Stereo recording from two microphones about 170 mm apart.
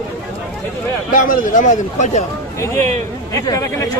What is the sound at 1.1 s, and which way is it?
A man's voice, 50° left (ahead or behind).